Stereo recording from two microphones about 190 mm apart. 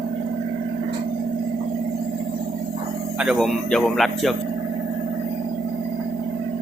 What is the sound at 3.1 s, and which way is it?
Speech, centre (ahead or behind).